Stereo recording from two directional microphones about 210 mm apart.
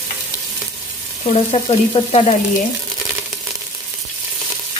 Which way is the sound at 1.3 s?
25° left (ahead or behind).